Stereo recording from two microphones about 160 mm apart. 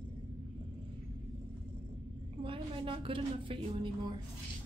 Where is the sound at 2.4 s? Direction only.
35° right (ahead or behind).